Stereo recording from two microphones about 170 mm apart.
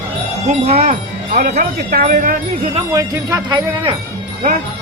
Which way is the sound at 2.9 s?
20° right (ahead or behind).